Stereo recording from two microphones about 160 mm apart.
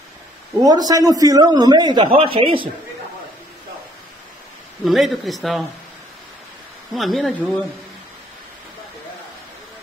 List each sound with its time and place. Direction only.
0.7 s a man's voice: 25° right (ahead or behind)
4.8 s speech: centre (ahead or behind)
6.9 s speech: centre (ahead or behind)